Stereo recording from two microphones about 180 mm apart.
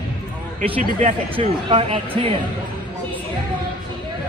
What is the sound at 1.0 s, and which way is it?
Speech, 35° right (ahead or behind).